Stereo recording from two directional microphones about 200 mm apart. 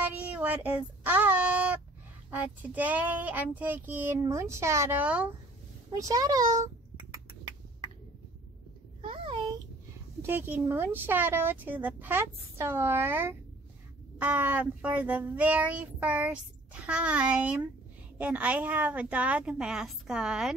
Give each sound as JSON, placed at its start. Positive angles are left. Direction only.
{"t": 0.0, "sound": "child singing", "side_deg": -10}
{"t": 2.3, "sound": "speech", "side_deg": -10}
{"t": 5.9, "sound": "a child's voice", "side_deg": -15}
{"t": 9.0, "sound": "a sound", "side_deg": -25}
{"t": 10.2, "sound": "speech", "side_deg": -10}